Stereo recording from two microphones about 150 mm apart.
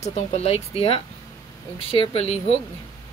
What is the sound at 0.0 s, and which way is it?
Speech, 45° left (ahead or behind).